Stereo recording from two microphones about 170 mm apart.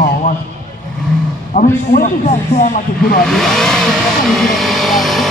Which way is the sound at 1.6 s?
50° left (ahead or behind).